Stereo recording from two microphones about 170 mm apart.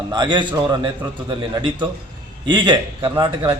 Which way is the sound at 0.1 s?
25° right (ahead or behind).